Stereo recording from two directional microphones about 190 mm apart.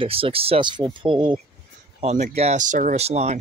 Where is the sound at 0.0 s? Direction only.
30° right (ahead or behind).